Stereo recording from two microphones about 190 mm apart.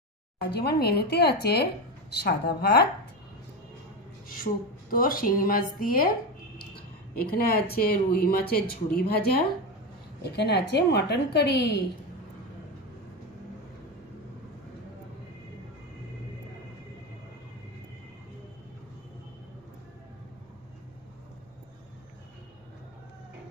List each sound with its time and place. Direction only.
0.4 s speech: 60° left (ahead or behind)
4.9 s speech: 50° left (ahead or behind)